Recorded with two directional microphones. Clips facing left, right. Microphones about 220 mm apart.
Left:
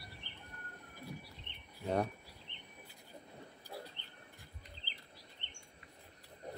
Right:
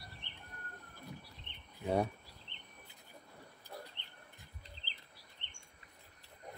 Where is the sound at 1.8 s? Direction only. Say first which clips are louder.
Right 1 dB; 10° right (ahead or behind).